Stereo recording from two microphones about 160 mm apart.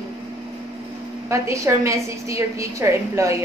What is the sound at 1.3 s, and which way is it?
A woman's voice, 20° right (ahead or behind).